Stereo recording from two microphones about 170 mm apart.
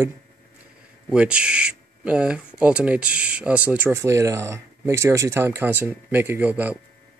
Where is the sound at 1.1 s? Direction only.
5° right (ahead or behind).